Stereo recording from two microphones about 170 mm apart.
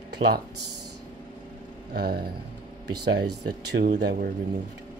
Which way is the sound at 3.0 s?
85° right.